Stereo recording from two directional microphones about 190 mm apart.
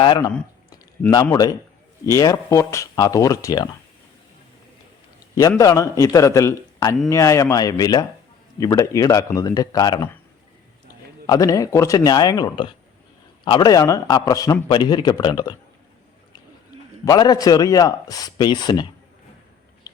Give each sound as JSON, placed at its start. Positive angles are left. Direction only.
{"t": 0.0, "sound": "a man's voice", "side_deg": 25}
{"t": 5.3, "sound": "speech", "side_deg": 15}
{"t": 11.3, "sound": "a man's voice", "side_deg": 15}
{"t": 17.1, "sound": "a man's voice", "side_deg": 20}